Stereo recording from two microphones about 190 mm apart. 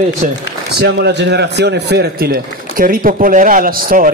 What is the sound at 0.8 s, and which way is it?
A man's voice, 65° right (ahead or behind).